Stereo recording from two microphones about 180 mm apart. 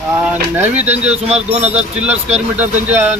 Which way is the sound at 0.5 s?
10° right (ahead or behind).